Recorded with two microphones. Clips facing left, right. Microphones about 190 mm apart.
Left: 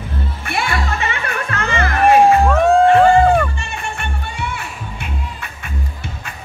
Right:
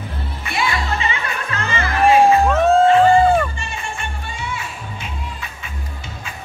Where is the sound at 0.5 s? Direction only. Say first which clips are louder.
Even; 55° left (ahead or behind).